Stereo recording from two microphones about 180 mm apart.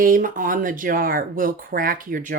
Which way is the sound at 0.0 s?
50° right (ahead or behind).